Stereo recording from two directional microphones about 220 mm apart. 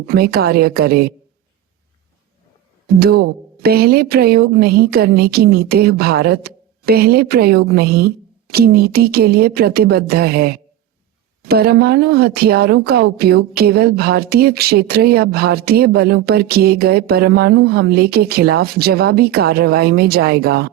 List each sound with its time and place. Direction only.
0.0 s a woman's voice: 45° right (ahead or behind)
2.8 s a woman's voice: 45° right (ahead or behind)